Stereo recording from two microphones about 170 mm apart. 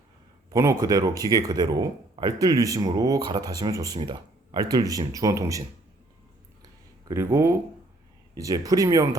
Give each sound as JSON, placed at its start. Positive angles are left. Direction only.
{"t": 0.5, "sound": "speech", "side_deg": -20}
{"t": 7.1, "sound": "speech", "side_deg": -15}